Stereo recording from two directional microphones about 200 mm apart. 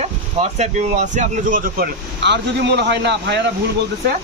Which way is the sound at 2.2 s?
60° right (ahead or behind).